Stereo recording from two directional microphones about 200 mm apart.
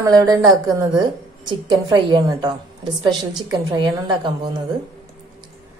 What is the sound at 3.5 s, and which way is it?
A woman's voice, 20° right (ahead or behind).